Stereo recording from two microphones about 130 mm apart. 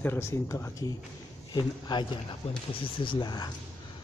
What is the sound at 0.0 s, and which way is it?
Speech, 20° left (ahead or behind).